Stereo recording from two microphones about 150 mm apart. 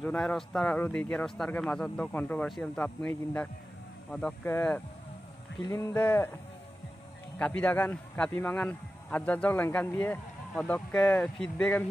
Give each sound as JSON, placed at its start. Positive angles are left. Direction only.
{"t": 0.0, "sound": "a man's voice", "side_deg": 5}
{"t": 5.6, "sound": "a man's voice", "side_deg": 20}
{"t": 7.3, "sound": "a man's voice", "side_deg": 10}